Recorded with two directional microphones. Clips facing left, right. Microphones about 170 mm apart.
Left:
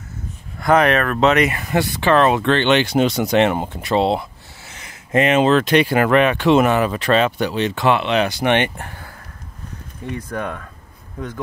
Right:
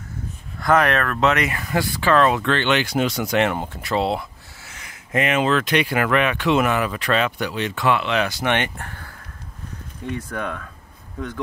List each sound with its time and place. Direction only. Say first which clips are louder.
0.6 s speech: left 3 dB; 20° left (ahead or behind)
10.1 s speech: left 2 dB; 10° left (ahead or behind)